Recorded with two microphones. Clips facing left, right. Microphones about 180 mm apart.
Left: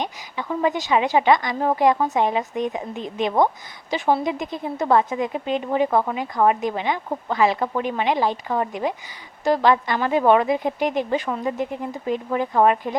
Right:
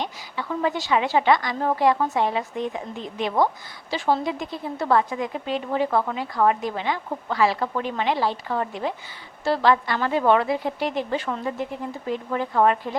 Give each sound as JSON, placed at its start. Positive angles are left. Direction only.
{"t": 0.0, "sound": "a woman's voice", "side_deg": 15}